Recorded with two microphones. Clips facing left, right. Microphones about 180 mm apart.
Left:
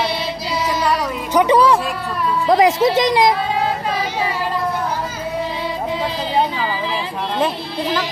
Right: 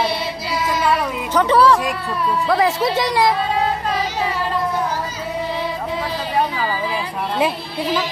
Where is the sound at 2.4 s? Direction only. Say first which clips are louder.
Left 5 dB; 20° left (ahead or behind).